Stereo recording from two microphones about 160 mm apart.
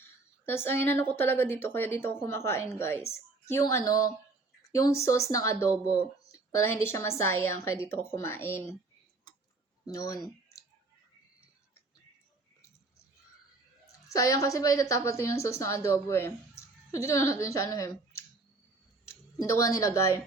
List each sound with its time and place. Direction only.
0.0 s a woman's voice: 15° left (ahead or behind)
6.0 s a sound: 20° left (ahead or behind)
6.8 s a woman's voice: 15° left (ahead or behind)
9.8 s a woman's voice: 20° left (ahead or behind)
14.1 s a woman's voice: 20° left (ahead or behind)